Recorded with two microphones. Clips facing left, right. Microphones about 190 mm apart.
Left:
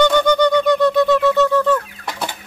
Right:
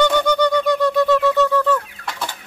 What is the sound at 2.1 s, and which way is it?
Chicken, 15° left (ahead or behind).